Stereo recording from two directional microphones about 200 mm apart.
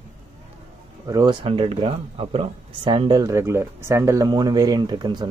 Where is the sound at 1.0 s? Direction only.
20° right (ahead or behind).